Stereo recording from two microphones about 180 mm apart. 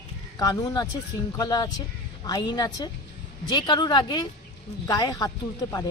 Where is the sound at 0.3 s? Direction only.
20° left (ahead or behind).